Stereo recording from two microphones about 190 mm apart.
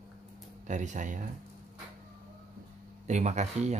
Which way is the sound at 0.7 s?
40° right (ahead or behind).